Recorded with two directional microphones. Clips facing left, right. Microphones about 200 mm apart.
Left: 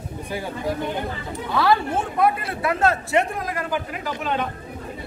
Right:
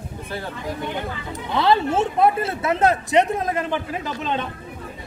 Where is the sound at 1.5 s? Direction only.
20° right (ahead or behind).